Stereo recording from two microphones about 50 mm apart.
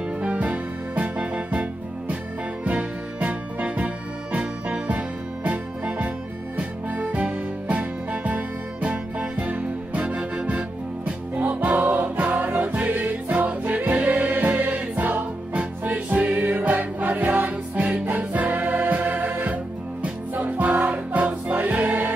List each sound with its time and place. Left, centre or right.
0.2 s music: right
3.2 s music: right